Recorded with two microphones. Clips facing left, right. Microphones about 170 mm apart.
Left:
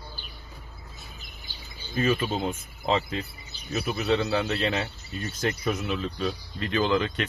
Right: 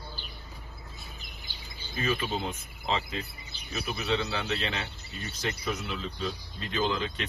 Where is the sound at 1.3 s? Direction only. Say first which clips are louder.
Left 1 dB; 45° left (ahead or behind); by 7.2 s 60° left (ahead or behind).